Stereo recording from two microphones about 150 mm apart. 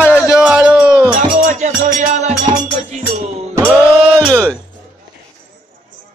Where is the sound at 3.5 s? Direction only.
10° right (ahead or behind).